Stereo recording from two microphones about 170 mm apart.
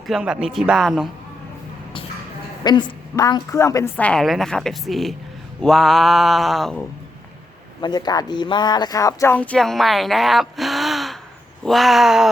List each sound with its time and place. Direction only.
0.1 s mantra: 5° right (ahead or behind)
2.6 s speech: 25° left (ahead or behind)
4.0 s mantra: 5° left (ahead or behind)
7.8 s speech: 25° left (ahead or behind)
9.3 s speech: 10° left (ahead or behind)
11.6 s mantra: centre (ahead or behind)